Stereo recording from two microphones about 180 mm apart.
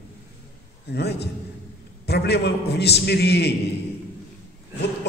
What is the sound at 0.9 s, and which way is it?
A man's voice, 65° left (ahead or behind).